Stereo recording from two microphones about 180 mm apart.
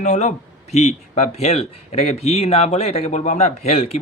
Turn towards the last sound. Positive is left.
turn(degrees=35)  # may be behind; listen again after turning